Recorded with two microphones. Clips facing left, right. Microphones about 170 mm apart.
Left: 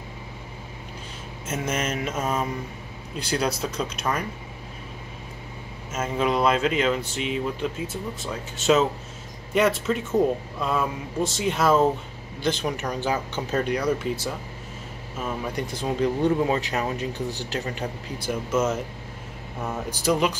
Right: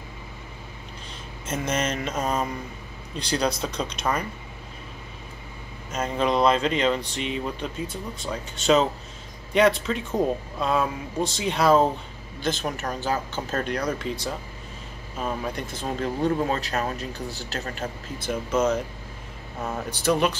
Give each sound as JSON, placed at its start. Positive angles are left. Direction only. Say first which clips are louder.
{"t": 1.5, "sound": "speech", "louder": "right 1 dB", "side_deg": 5}
{"t": 5.9, "sound": "speech", "louder": "even", "side_deg": 5}
{"t": 12.6, "sound": "speech", "louder": "left 1 dB", "side_deg": 15}
{"t": 18.5, "sound": "speech", "louder": "right 2 dB", "side_deg": 5}